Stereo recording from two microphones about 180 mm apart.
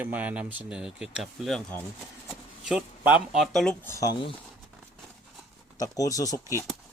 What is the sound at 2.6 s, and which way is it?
Speech, 5° right (ahead or behind).